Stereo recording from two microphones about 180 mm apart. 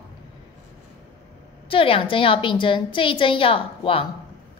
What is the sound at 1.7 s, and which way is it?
A woman's voice, 30° left (ahead or behind).